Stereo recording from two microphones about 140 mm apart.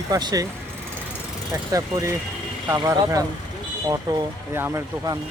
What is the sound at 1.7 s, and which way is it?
Speech, 25° right (ahead or behind).